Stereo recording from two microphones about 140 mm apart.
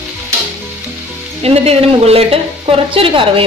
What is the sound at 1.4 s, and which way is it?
A woman's voice, 45° right (ahead or behind).